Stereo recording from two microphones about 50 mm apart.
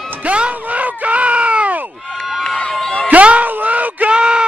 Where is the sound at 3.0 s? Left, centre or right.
Right.